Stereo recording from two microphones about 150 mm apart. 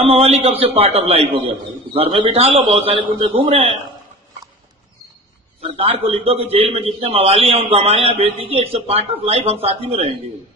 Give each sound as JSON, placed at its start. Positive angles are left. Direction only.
{"t": 0.0, "sound": "a man's voice", "side_deg": -40}
{"t": 5.6, "sound": "a man's voice", "side_deg": -40}